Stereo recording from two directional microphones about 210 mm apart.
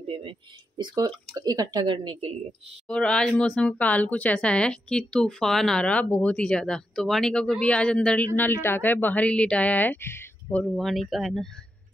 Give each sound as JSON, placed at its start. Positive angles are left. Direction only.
{"t": 0.0, "sound": "speech", "side_deg": -25}
{"t": 2.9, "sound": "speech", "side_deg": 5}